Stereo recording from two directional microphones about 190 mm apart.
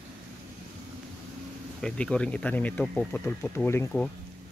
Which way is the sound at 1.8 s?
5° left (ahead or behind).